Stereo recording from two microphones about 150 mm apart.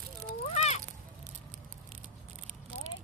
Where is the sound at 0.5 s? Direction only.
45° left (ahead or behind).